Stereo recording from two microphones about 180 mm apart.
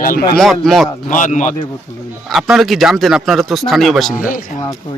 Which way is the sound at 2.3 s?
Centre (ahead or behind).